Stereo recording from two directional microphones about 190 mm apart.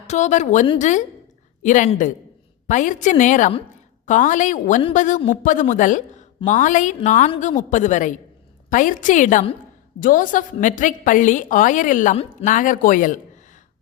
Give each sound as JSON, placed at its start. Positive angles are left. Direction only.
{"t": 0.1, "sound": "a woman's voice", "side_deg": 40}